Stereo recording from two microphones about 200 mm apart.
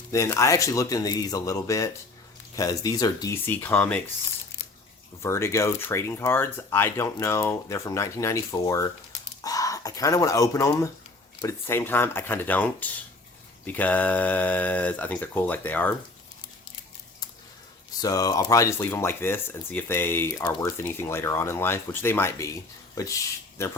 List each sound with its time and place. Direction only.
0.1 s speech: 15° left (ahead or behind)
5.2 s speech: 15° left (ahead or behind)
18.0 s speech: 20° left (ahead or behind)